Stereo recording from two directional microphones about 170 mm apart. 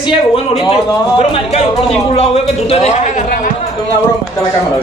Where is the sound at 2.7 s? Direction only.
40° left (ahead or behind).